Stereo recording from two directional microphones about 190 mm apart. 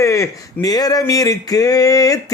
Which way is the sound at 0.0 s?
15° left (ahead or behind).